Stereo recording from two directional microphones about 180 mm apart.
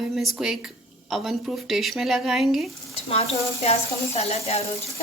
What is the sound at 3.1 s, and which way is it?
Speech, 35° left (ahead or behind).